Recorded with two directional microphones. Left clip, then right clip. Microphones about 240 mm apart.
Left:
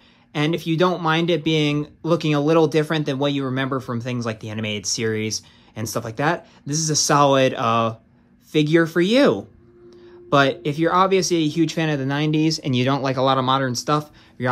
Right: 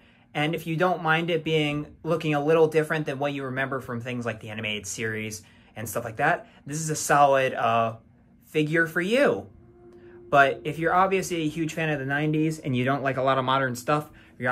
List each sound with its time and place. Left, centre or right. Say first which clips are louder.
0.7 s speech: left 3 dB; left
10.6 s speech: left 4 dB; left